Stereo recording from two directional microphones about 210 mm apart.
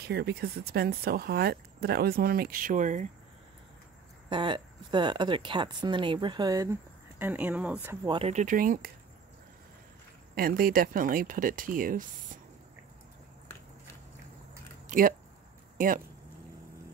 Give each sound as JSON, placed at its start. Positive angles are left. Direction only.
{"t": 0.1, "sound": "speech", "side_deg": -50}
{"t": 4.3, "sound": "speech", "side_deg": -20}
{"t": 8.1, "sound": "speech", "side_deg": -30}
{"t": 10.3, "sound": "speech", "side_deg": -45}
{"t": 14.9, "sound": "a sound", "side_deg": -40}